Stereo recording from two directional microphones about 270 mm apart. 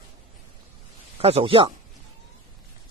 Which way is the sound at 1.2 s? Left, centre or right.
Right.